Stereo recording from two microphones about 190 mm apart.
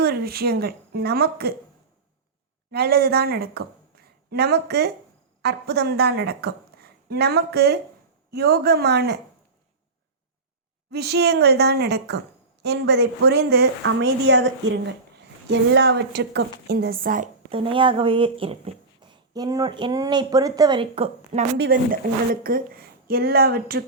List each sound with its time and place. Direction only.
0.0 s speech: 55° right (ahead or behind)
2.7 s a woman's voice: 55° right (ahead or behind)
10.9 s speech: 60° right (ahead or behind)
17.5 s speech: 30° right (ahead or behind)
21.7 s speech: 50° right (ahead or behind)